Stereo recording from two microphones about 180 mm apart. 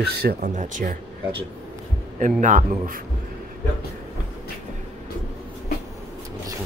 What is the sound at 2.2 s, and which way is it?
Speech, 45° right (ahead or behind).